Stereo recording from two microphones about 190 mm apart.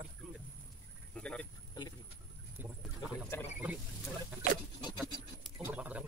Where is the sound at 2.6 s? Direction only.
10° right (ahead or behind).